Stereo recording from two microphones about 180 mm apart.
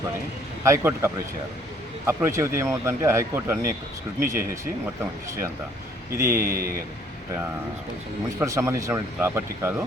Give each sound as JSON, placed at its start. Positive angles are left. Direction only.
{"t": 0.6, "sound": "speech", "side_deg": -15}
{"t": 6.1, "sound": "speech", "side_deg": -15}
{"t": 6.4, "sound": "a man's voice", "side_deg": -55}
{"t": 8.4, "sound": "speech", "side_deg": -15}